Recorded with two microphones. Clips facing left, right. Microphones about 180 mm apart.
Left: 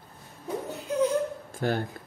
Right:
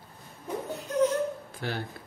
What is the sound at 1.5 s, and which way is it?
Speech, 50° left (ahead or behind).